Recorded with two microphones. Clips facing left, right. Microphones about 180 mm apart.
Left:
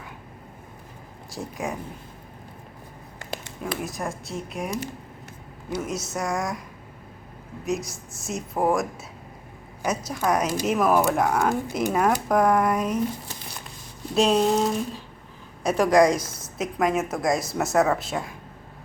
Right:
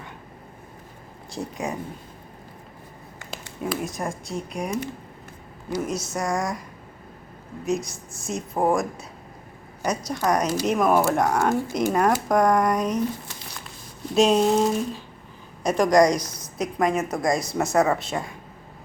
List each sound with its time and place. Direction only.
1.4 s speech: centre (ahead or behind)
3.6 s speech: centre (ahead or behind)
7.6 s speech: centre (ahead or behind)
14.2 s speech: centre (ahead or behind)
16.2 s a woman's voice: 25° left (ahead or behind)
16.6 s speech: centre (ahead or behind)